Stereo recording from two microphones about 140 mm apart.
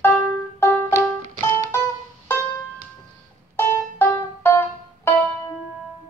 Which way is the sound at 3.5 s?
15° left (ahead or behind).